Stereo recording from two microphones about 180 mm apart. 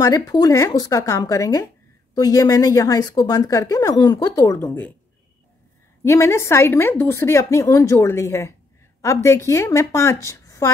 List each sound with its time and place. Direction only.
0.0 s a woman's voice: 20° left (ahead or behind)
6.0 s a woman's voice: 15° left (ahead or behind)